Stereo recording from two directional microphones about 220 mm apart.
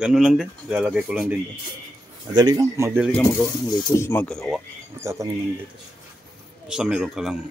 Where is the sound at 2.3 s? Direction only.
15° right (ahead or behind).